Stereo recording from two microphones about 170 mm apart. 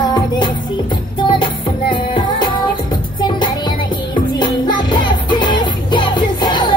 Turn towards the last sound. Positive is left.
turn(degrees=25)  # may be behind; listen again after turning